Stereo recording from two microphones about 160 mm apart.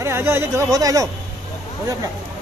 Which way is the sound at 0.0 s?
15° right (ahead or behind).